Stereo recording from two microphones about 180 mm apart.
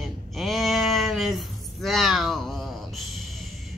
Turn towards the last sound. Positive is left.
turn(degrees=0)  # may be behind; listen again after turning